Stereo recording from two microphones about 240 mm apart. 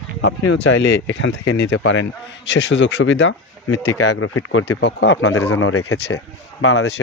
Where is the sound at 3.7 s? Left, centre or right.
Left.